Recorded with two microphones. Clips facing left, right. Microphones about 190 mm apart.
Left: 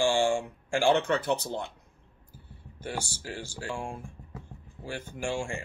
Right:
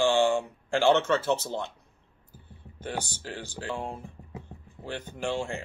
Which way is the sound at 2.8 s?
10° left (ahead or behind).